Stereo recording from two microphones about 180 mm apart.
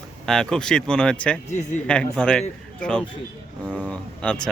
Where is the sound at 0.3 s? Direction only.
5° left (ahead or behind).